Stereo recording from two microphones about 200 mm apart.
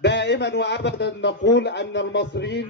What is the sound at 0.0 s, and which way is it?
A man's voice, 60° left (ahead or behind).